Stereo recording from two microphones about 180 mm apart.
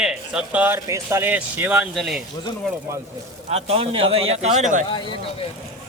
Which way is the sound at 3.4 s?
35° right (ahead or behind).